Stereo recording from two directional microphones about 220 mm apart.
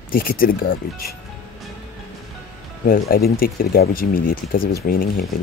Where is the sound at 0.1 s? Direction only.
40° left (ahead or behind).